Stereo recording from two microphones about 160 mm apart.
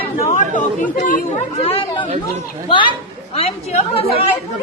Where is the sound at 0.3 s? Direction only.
50° left (ahead or behind); by 2.9 s 30° left (ahead or behind).